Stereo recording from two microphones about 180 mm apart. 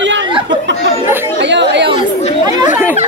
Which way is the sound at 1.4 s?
75° right (ahead or behind).